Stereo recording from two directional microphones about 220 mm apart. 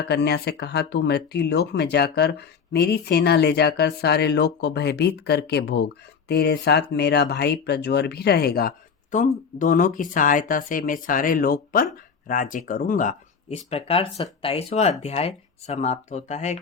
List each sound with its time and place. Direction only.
0.0 s speech: 50° left (ahead or behind); by 16.6 s 30° left (ahead or behind)